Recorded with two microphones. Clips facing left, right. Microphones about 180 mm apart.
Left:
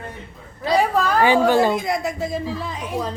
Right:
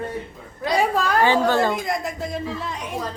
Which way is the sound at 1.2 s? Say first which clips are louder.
Left 3 dB; 15° left (ahead or behind).